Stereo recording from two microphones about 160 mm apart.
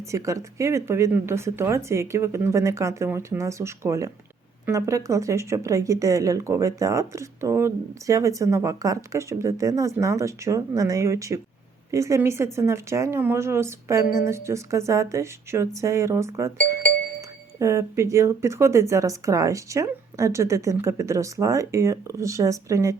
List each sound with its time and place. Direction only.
0.1 s speech: 20° right (ahead or behind)